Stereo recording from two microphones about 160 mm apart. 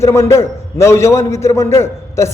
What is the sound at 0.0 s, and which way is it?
A man's voice, 15° left (ahead or behind).